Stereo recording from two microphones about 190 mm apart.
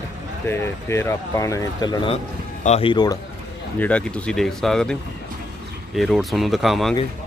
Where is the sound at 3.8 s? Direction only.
5° left (ahead or behind).